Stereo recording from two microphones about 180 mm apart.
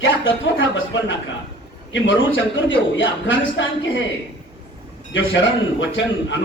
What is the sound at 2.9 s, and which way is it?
Speech, 90° left.